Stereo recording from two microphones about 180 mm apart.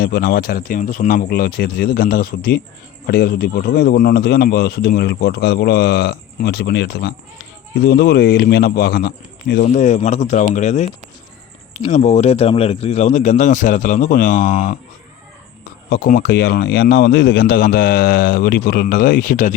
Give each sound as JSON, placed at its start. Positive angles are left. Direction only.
{"t": 0.0, "sound": "speech", "side_deg": 55}
{"t": 9.7, "sound": "speech", "side_deg": 40}
{"t": 15.9, "sound": "speech", "side_deg": 55}